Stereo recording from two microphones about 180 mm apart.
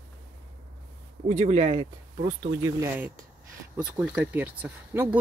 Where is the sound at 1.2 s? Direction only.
40° right (ahead or behind).